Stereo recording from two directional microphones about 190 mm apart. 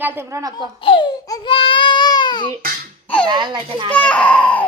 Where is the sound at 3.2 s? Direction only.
25° right (ahead or behind).